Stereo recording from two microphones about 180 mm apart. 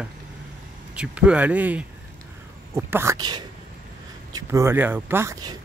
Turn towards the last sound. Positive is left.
turn(degrees=-20)  # may be behind; listen again after turning